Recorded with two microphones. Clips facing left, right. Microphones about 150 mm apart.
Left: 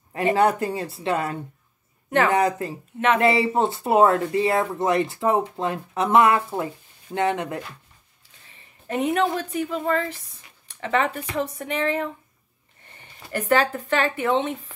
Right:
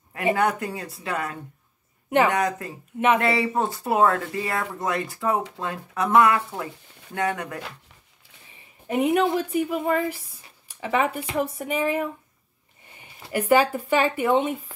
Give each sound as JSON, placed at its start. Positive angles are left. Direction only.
{"t": 0.1, "sound": "speech", "side_deg": 30}
{"t": 2.0, "sound": "speech", "side_deg": -15}
{"t": 2.3, "sound": "speech", "side_deg": 30}
{"t": 8.8, "sound": "a woman's voice", "side_deg": -10}